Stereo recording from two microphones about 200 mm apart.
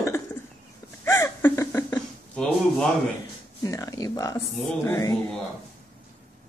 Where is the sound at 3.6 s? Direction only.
15° left (ahead or behind).